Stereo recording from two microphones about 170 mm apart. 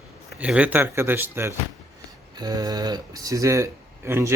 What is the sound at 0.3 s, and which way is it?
Speech, 10° right (ahead or behind).